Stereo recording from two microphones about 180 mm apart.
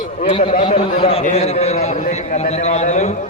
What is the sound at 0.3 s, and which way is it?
A man's voice, 40° left (ahead or behind).